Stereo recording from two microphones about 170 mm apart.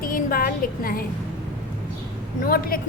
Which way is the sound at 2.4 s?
60° left (ahead or behind).